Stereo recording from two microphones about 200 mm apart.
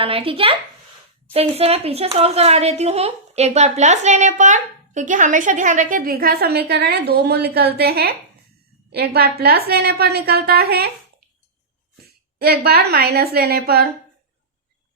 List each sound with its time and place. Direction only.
0.0 s a woman's voice: 25° right (ahead or behind); by 10.8 s 50° right (ahead or behind)
12.4 s a woman's voice: 50° right (ahead or behind)